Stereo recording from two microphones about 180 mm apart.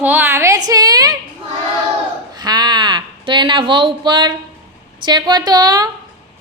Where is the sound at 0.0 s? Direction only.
10° right (ahead or behind).